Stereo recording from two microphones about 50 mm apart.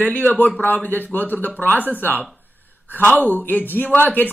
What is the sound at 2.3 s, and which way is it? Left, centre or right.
Gasp, left.